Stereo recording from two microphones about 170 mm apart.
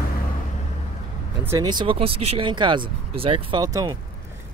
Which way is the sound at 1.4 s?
20° right (ahead or behind).